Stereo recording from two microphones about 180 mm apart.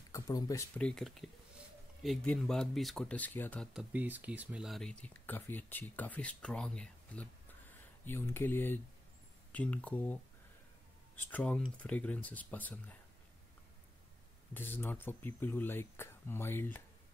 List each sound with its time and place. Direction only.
0.1 s speech: 20° left (ahead or behind)
0.7 s speech: 5° left (ahead or behind)
3.7 s speech: 10° right (ahead or behind); by 10.1 s 10° left (ahead or behind)
11.1 s speech: 10° left (ahead or behind)
14.5 s speech: 10° left (ahead or behind)